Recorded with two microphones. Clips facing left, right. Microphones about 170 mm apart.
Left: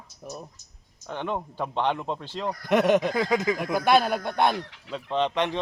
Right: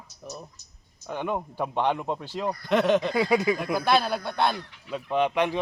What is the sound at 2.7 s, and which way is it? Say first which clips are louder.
Speech: left 2 dB; 15° left (ahead or behind).